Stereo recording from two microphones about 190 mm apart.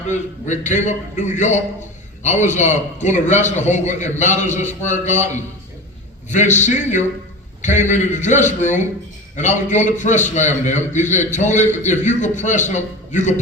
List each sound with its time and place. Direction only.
0.1 s a man's voice: 40° left (ahead or behind)